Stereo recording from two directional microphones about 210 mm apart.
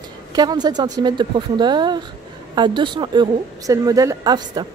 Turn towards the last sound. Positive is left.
turn(degrees=-20)  # may be behind; listen again after turning